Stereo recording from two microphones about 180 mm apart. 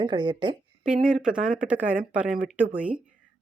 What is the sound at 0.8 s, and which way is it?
Speech, 5° right (ahead or behind).